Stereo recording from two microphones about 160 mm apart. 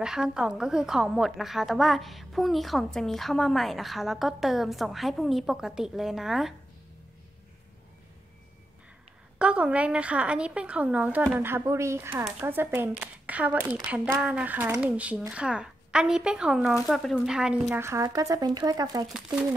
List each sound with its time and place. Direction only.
0.0 s a woman's voice: 5° right (ahead or behind)
9.4 s a woman's voice: 5° right (ahead or behind)
17.8 s speech: 20° right (ahead or behind)